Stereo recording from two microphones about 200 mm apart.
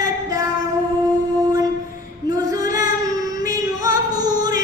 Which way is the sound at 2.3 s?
20° right (ahead or behind).